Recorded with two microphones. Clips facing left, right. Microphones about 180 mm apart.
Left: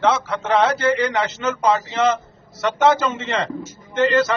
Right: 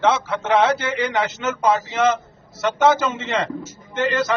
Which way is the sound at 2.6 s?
Centre (ahead or behind).